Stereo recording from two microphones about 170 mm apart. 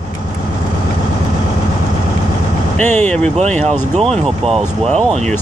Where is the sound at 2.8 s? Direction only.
10° left (ahead or behind).